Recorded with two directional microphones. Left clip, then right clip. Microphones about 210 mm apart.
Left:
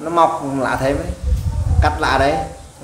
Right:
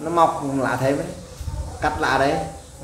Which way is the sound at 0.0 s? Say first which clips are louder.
Left 3 dB; 20° left (ahead or behind).